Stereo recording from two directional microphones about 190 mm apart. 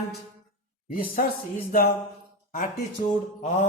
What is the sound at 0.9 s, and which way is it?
Speech, 50° left (ahead or behind).